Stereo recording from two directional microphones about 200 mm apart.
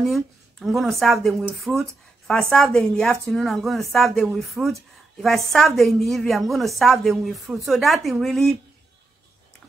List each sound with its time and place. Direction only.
0.0 s speech: centre (ahead or behind)